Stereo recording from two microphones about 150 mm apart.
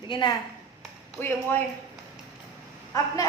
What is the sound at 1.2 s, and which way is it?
Speech, 15° left (ahead or behind).